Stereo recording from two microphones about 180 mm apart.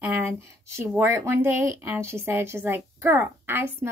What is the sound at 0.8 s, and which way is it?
Speech, 15° right (ahead or behind).